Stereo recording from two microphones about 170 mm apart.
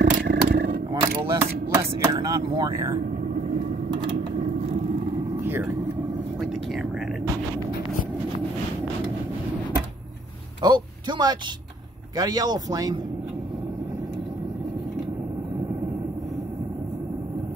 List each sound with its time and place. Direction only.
0.0 s roaring cats: 70° right (ahead or behind)
1.4 s speech: 15° right (ahead or behind)
5.4 s vehicle: 10° right (ahead or behind)
6.4 s speech: centre (ahead or behind)
10.6 s a man's voice: 25° right (ahead or behind)